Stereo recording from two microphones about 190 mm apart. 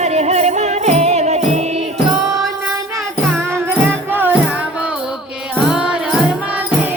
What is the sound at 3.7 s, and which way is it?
Music, 10° right (ahead or behind).